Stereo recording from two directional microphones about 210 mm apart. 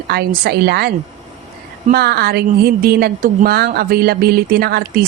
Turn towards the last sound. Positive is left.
turn(degrees=-50)  # may be behind; listen again after turning